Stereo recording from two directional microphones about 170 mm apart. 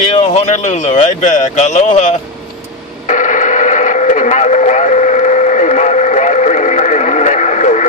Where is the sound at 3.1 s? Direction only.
50° left (ahead or behind).